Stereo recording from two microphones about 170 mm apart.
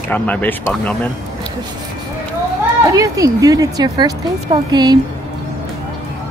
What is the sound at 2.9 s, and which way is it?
Speech, 20° right (ahead or behind).